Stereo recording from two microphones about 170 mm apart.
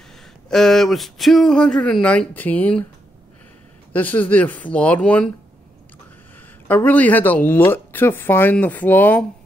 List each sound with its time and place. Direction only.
0.5 s speech: centre (ahead or behind)
3.9 s speech: 10° left (ahead or behind)
6.7 s speech: 10° left (ahead or behind)